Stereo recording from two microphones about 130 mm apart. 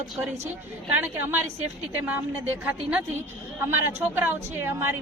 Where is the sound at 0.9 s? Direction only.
15° right (ahead or behind).